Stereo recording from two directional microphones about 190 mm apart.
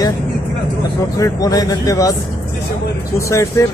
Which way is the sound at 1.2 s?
20° left (ahead or behind).